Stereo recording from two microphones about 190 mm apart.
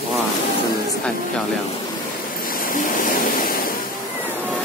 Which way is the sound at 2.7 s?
45° left (ahead or behind).